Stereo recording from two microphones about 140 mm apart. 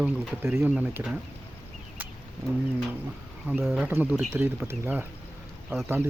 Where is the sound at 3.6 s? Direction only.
5° right (ahead or behind).